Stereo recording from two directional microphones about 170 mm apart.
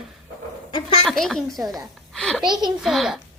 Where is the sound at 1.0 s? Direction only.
Centre (ahead or behind).